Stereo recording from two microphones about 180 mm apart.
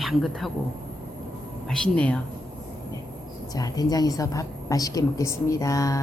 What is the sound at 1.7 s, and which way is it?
Speech, 5° left (ahead or behind).